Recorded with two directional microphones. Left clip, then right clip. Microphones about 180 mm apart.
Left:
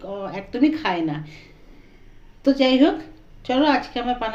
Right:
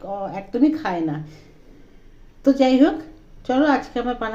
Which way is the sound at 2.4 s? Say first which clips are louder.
Right 1 dB; 45° right (ahead or behind).